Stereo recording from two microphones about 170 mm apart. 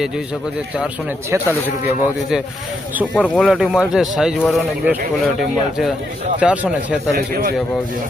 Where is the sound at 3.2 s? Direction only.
Centre (ahead or behind).